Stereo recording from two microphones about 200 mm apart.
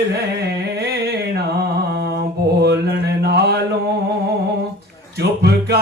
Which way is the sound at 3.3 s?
55° right (ahead or behind).